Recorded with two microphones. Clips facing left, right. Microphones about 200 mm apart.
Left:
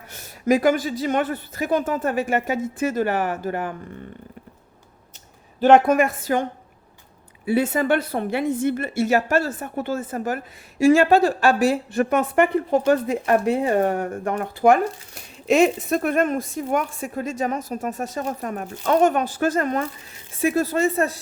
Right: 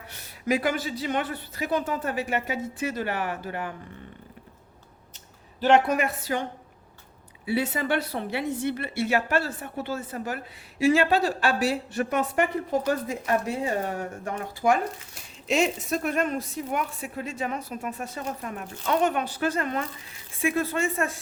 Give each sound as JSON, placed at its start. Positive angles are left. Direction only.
{"t": 0.1, "sound": "a woman's voice", "side_deg": 45}
{"t": 5.5, "sound": "a woman's voice", "side_deg": 50}
{"t": 7.4, "sound": "a woman's voice", "side_deg": 50}